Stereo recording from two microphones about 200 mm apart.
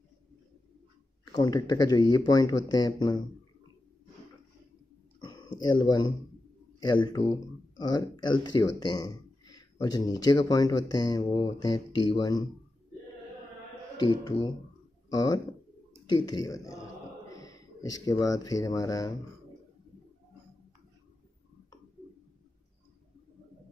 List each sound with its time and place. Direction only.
1.2 s speech: 20° left (ahead or behind)
5.2 s a sound: 20° left (ahead or behind)
6.8 s speech: 20° left (ahead or behind)
13.9 s speech: 20° left (ahead or behind)